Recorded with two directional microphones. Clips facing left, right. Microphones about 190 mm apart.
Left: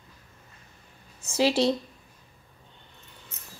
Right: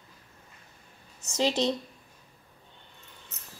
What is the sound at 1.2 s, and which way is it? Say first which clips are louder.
Speech: left 4 dB; 10° left (ahead or behind).